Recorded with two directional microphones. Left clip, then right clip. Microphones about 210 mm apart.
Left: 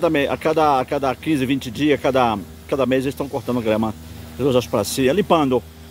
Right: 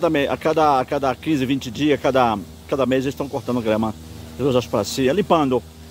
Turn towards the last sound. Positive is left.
turn(degrees=5)  # may be behind; listen again after turning